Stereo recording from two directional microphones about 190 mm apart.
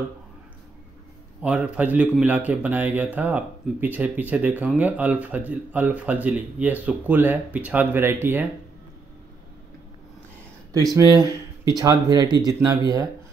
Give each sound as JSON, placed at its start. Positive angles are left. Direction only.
{"t": 1.4, "sound": "a man's voice", "side_deg": -5}
{"t": 11.0, "sound": "speech", "side_deg": -20}